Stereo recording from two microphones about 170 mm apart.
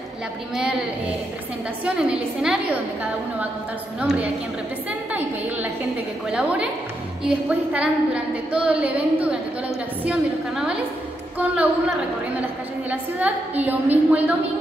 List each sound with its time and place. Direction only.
1.9 s a woman's voice: 5° right (ahead or behind)
4.0 s a woman's voice: 10° right (ahead or behind)
6.3 s a woman's voice: 5° right (ahead or behind)
12.9 s a woman's voice: 10° right (ahead or behind)